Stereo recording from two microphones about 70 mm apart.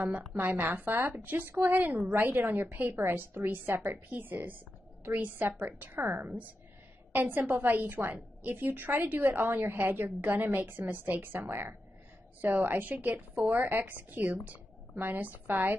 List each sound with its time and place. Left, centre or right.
0.0 s a woman's voice: centre
0.4 s a woman's voice: right